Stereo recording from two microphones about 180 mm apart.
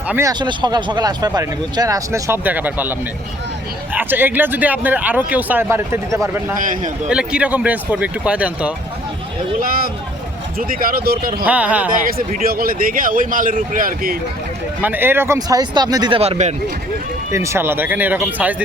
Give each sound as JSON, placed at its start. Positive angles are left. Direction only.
{"t": 0.1, "sound": "speech", "side_deg": -15}
{"t": 3.9, "sound": "speech", "side_deg": -10}
{"t": 6.6, "sound": "speech", "side_deg": -50}
{"t": 7.1, "sound": "speech", "side_deg": -5}
{"t": 9.6, "sound": "speech", "side_deg": -55}
{"t": 11.4, "sound": "speech", "side_deg": -10}
{"t": 12.0, "sound": "speech", "side_deg": -55}
{"t": 14.8, "sound": "speech", "side_deg": -10}
{"t": 17.3, "sound": "speech", "side_deg": -15}